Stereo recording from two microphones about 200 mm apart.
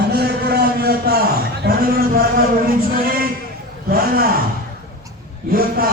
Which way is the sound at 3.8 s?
45° right (ahead or behind).